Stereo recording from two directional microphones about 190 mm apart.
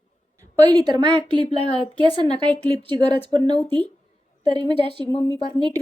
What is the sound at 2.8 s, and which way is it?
Speech, 25° right (ahead or behind).